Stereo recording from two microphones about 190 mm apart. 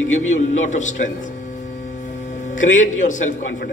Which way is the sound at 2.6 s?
40° left (ahead or behind).